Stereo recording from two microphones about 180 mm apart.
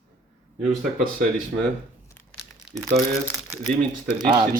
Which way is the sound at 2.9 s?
35° right (ahead or behind).